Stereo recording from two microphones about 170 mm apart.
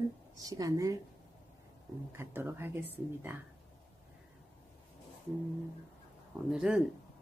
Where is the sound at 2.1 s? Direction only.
15° right (ahead or behind).